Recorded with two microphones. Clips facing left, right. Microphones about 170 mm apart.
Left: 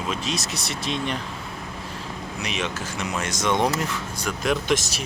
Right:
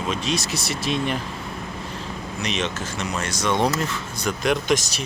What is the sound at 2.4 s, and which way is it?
Speech, 10° left (ahead or behind).